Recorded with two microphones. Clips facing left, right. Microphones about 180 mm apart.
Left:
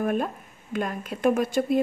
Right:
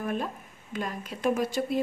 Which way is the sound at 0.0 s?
50° left (ahead or behind).